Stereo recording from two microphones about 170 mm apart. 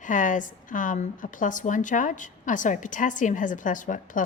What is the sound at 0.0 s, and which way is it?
A woman's voice, 50° left (ahead or behind).